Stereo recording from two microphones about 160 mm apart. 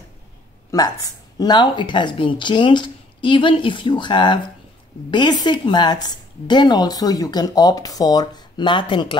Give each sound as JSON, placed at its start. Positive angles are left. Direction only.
{"t": 0.7, "sound": "a woman's voice", "side_deg": 25}